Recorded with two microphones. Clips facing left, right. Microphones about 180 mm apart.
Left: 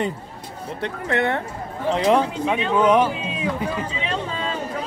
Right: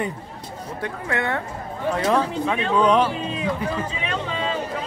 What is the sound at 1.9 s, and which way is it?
Speech, 20° left (ahead or behind).